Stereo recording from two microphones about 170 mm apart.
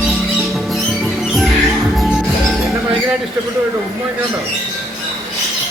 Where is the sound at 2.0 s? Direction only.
Centre (ahead or behind).